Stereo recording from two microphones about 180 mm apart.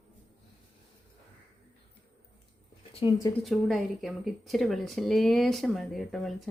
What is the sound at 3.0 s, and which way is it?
Speech, 25° left (ahead or behind).